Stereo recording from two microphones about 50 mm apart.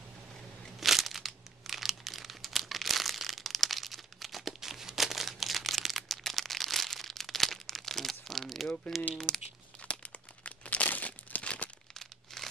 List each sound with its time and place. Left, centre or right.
0.7 s crumpling: centre
8.8 s speech: centre
9.3 s speech: left
9.8 s crumpling: left
11.9 s crumpling: centre